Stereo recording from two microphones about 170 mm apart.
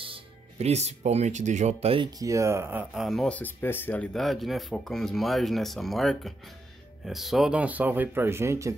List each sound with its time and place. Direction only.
0.0 s speech: 35° right (ahead or behind)
2.1 s speech: 20° right (ahead or behind)